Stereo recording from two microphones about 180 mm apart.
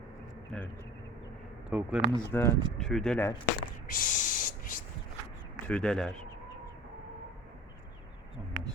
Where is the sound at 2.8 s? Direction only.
5° left (ahead or behind).